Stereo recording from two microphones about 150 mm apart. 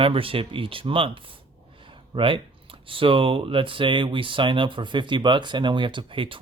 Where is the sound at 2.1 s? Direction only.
35° right (ahead or behind).